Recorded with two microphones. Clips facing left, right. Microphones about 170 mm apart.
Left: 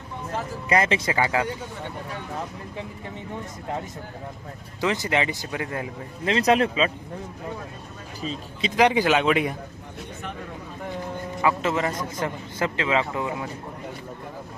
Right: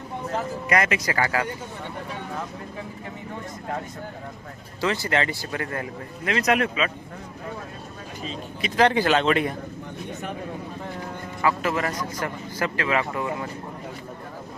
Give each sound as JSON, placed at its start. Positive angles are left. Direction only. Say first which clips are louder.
{"t": 0.7, "sound": "speech", "louder": "left 2 dB", "side_deg": 25}
{"t": 4.8, "sound": "speech", "louder": "even", "side_deg": 15}
{"t": 6.2, "sound": "speech", "louder": "left 2 dB", "side_deg": 30}
{"t": 8.6, "sound": "speech", "louder": "even", "side_deg": 15}
{"t": 11.4, "sound": "speech", "louder": "left 1 dB", "side_deg": 20}